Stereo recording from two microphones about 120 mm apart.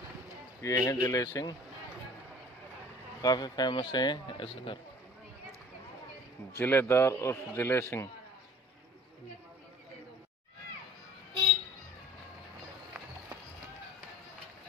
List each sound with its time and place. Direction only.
0.6 s a man's voice: 25° left (ahead or behind)
3.2 s speech: 35° left (ahead or behind)
6.5 s a man's voice: 15° left (ahead or behind)